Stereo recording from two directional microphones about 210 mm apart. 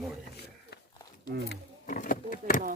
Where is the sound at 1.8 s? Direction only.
40° left (ahead or behind).